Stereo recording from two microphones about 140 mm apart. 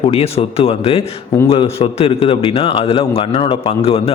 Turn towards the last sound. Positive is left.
turn(degrees=45)  # may be behind; listen again after turning